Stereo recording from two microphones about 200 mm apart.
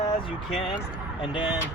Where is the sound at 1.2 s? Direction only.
25° left (ahead or behind).